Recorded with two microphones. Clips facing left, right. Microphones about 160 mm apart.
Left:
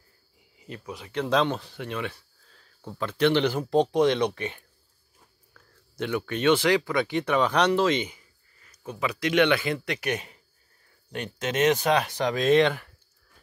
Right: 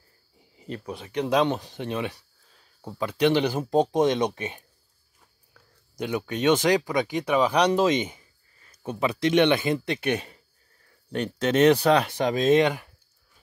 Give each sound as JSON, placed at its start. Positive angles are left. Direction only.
{"t": 0.6, "sound": "speech", "side_deg": -35}
{"t": 1.1, "sound": "speech", "side_deg": -15}